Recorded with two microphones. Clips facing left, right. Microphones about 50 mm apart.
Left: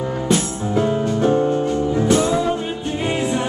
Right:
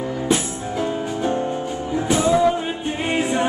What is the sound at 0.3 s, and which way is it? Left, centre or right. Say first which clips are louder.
Music: left 4 dB; centre.